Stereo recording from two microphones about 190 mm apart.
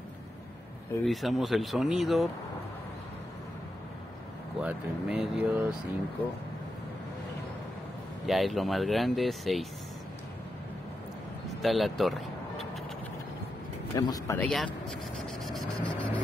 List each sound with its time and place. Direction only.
1.0 s speech: centre (ahead or behind)
4.6 s speech: 5° right (ahead or behind)
8.3 s speech: centre (ahead or behind)
11.4 s vehicle: centre (ahead or behind)
13.9 s speech: 15° left (ahead or behind)
14.5 s speech: centre (ahead or behind)